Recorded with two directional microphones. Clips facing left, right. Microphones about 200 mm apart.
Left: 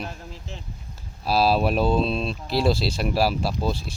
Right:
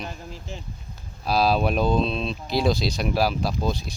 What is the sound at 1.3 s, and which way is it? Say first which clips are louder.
Speech: left 1 dB; 5° left (ahead or behind).